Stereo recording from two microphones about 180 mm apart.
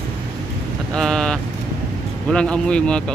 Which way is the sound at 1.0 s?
5° left (ahead or behind).